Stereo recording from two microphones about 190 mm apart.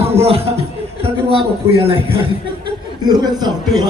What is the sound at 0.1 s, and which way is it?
A man's voice, 30° right (ahead or behind).